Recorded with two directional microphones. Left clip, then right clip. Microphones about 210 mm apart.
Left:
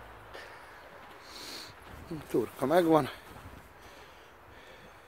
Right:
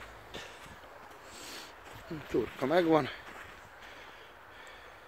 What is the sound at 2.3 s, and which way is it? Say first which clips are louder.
Speech: left 2 dB; 20° left (ahead or behind).